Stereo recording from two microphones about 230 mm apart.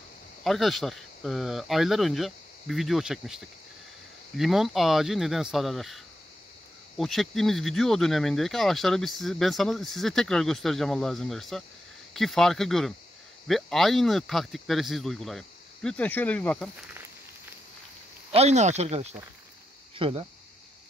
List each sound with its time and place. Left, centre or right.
0.4 s speech: centre
18.3 s speech: right